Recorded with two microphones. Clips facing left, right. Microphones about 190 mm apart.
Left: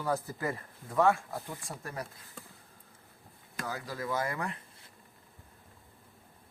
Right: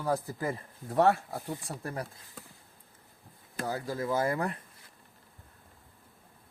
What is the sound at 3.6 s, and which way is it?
Speech, 30° right (ahead or behind).